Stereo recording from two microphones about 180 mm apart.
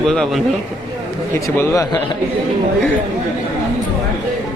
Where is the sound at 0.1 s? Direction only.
Centre (ahead or behind).